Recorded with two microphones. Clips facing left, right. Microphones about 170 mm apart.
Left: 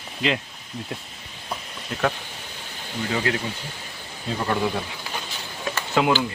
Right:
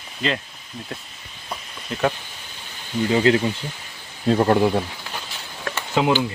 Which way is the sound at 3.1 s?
25° right (ahead or behind).